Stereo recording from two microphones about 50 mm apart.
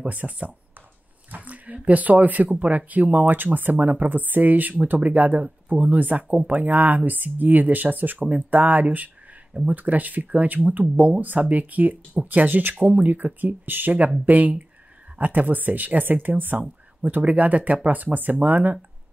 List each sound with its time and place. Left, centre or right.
0.1 s speech: right